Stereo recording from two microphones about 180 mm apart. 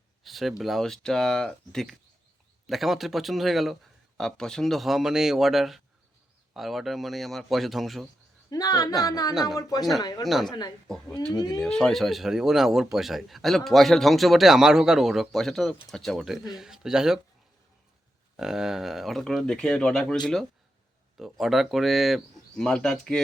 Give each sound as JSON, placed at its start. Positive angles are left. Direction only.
{"t": 0.2, "sound": "a man's voice", "side_deg": 0}
{"t": 8.4, "sound": "speech", "side_deg": 20}
{"t": 9.3, "sound": "a man's voice", "side_deg": 0}
{"t": 9.6, "sound": "speech", "side_deg": 20}
{"t": 10.2, "sound": "a man's voice", "side_deg": 0}
{"t": 10.5, "sound": "speech", "side_deg": 20}
{"t": 10.8, "sound": "a man's voice", "side_deg": 5}
{"t": 11.3, "sound": "speech", "side_deg": 20}
{"t": 11.6, "sound": "a man's voice", "side_deg": 0}
{"t": 18.3, "sound": "a man's voice", "side_deg": -5}